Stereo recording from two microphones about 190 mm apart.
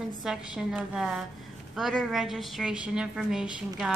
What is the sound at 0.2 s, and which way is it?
A woman's voice, centre (ahead or behind).